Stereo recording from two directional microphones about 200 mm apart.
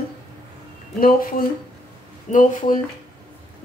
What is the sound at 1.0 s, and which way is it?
A woman's voice, 45° left (ahead or behind).